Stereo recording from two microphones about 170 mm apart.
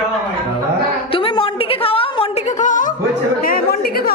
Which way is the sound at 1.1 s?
30° left (ahead or behind).